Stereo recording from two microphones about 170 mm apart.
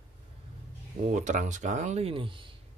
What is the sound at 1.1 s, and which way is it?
Speech, 45° right (ahead or behind).